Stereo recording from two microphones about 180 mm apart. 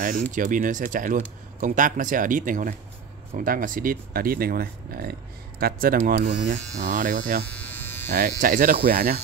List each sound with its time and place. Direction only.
0.0 s speech: 45° right (ahead or behind)
7.4 s electric shaver: 10° left (ahead or behind)
8.1 s speech: 50° right (ahead or behind)